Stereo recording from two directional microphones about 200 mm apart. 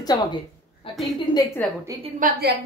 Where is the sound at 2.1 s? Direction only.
40° right (ahead or behind).